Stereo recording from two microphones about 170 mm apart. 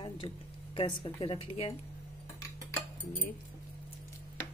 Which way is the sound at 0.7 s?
30° left (ahead or behind).